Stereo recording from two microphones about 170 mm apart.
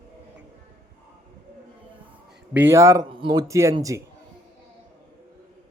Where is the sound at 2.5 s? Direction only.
15° right (ahead or behind).